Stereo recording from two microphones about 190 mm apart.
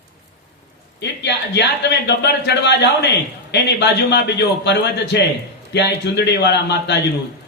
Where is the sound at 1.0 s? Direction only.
65° left (ahead or behind).